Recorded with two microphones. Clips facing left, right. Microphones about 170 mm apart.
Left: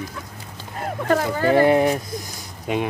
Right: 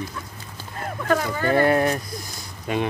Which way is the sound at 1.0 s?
30° left (ahead or behind).